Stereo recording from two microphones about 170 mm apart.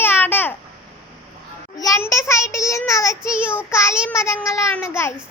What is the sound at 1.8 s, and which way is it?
Child singing, 20° left (ahead or behind).